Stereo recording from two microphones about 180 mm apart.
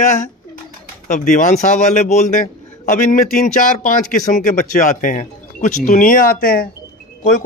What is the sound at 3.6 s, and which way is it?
A man's voice, 45° left (ahead or behind).